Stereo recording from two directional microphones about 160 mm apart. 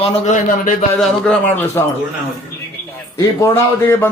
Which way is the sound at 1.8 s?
20° left (ahead or behind).